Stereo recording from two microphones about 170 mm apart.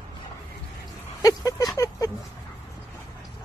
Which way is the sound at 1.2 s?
20° left (ahead or behind).